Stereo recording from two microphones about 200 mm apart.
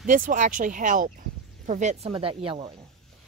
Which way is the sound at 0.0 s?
40° right (ahead or behind).